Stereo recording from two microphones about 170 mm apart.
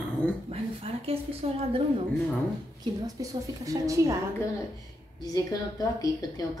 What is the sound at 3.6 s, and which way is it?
Speech, 20° right (ahead or behind).